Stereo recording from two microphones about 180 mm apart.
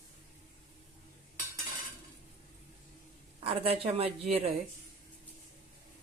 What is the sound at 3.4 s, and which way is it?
Speech, 35° right (ahead or behind).